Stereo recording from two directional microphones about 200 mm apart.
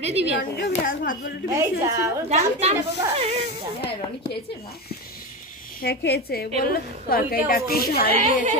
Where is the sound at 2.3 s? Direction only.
30° right (ahead or behind).